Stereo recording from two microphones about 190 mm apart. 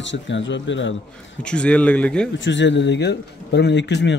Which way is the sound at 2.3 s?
70° left (ahead or behind).